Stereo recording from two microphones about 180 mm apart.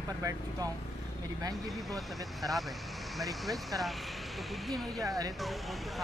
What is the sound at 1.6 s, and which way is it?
Speech, centre (ahead or behind).